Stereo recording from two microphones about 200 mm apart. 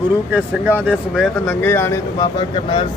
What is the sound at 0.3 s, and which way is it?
Speech, 5° right (ahead or behind).